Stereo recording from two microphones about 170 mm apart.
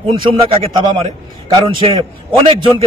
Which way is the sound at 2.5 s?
30° right (ahead or behind).